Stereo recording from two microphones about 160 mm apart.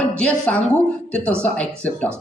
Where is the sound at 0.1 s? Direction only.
5° left (ahead or behind).